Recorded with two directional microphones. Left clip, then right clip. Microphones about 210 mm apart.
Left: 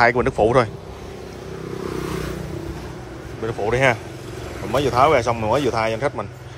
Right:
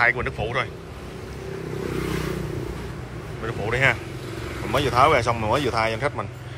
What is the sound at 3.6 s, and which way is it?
Speech, 25° left (ahead or behind).